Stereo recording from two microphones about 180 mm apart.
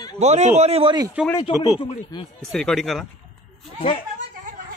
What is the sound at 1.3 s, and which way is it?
Speech, 25° left (ahead or behind).